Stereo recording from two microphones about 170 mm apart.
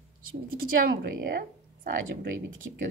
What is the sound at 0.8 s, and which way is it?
Speech, 70° right (ahead or behind).